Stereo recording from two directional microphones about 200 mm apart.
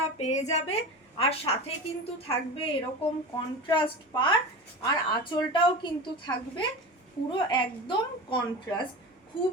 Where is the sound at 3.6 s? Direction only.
25° left (ahead or behind).